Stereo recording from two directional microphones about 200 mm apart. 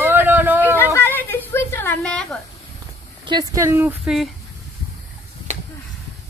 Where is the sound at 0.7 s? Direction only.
10° left (ahead or behind).